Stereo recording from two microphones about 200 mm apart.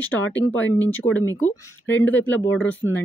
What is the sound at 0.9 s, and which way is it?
Speech, 10° left (ahead or behind).